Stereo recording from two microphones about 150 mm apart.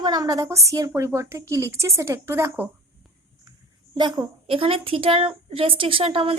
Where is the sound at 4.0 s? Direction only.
30° right (ahead or behind).